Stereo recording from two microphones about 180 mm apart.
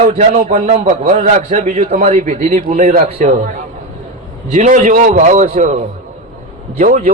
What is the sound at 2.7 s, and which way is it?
Speech, 45° right (ahead or behind).